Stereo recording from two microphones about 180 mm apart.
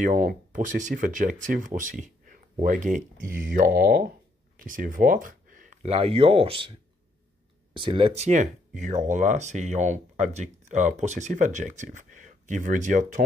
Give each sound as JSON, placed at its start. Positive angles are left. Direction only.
{"t": 0.0, "sound": "speech", "side_deg": -50}
{"t": 7.7, "sound": "speech", "side_deg": -30}
{"t": 8.3, "sound": "speech", "side_deg": -45}